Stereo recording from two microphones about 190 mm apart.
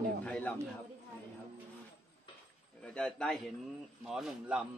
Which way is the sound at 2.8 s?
5° left (ahead or behind).